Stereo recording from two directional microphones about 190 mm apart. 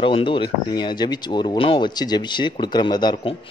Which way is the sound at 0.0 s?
25° left (ahead or behind).